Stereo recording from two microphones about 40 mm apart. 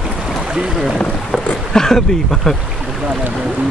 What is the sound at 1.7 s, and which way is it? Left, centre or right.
Speech, centre.